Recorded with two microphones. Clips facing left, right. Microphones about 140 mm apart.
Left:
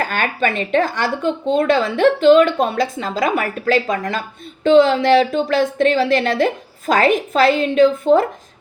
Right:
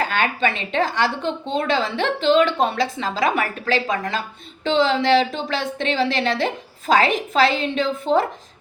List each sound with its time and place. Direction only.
0.0 s a woman's voice: 45° left (ahead or behind)